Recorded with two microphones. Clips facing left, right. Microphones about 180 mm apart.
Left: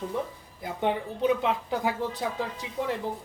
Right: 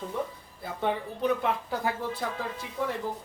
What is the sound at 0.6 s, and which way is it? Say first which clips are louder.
Speech: left 2 dB; 15° left (ahead or behind).